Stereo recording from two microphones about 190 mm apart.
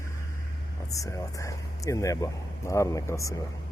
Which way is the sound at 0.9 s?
15° left (ahead or behind).